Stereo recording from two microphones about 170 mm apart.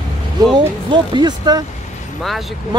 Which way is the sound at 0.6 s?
25° right (ahead or behind).